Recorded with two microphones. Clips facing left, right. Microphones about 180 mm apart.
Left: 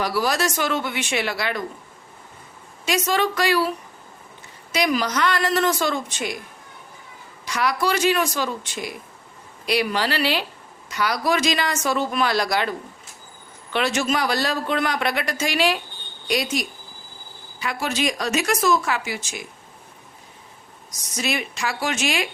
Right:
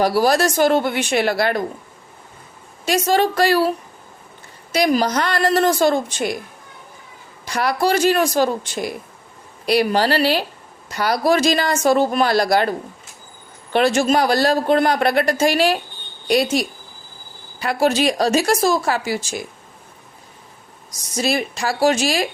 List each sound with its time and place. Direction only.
0.0 s speech: 35° right (ahead or behind)
2.8 s speech: 35° right (ahead or behind)
7.4 s speech: 35° right (ahead or behind)
13.7 s speech: 35° right (ahead or behind)
21.2 s speech: 35° right (ahead or behind)